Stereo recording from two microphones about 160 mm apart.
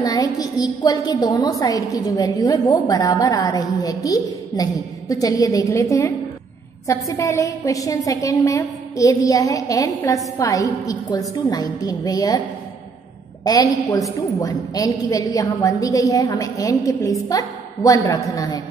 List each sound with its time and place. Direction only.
0.0 s a woman's voice: 25° left (ahead or behind)